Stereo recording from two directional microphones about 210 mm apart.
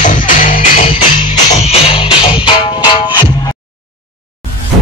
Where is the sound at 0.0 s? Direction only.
40° left (ahead or behind).